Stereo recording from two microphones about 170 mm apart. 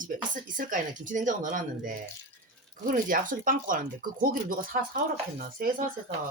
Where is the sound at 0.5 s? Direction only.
50° right (ahead or behind).